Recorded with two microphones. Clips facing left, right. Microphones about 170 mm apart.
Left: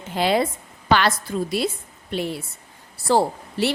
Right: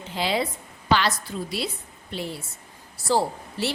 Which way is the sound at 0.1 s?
55° left (ahead or behind).